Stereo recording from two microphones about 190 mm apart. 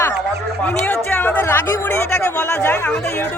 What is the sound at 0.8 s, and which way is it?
Speech, 10° left (ahead or behind).